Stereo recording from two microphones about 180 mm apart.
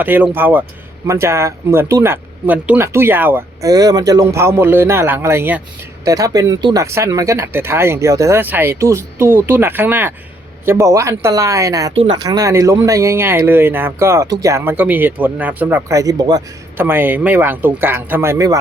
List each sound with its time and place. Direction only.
0.0 s speech: 10° right (ahead or behind)